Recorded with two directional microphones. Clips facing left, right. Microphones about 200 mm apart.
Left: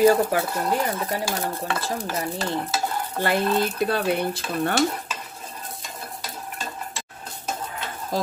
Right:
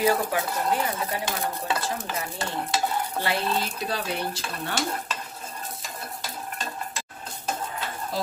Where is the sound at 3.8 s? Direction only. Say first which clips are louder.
Left 7 dB; 55° left (ahead or behind).